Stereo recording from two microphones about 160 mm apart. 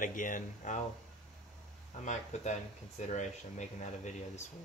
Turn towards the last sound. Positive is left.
turn(degrees=45)  # may be behind; listen again after turning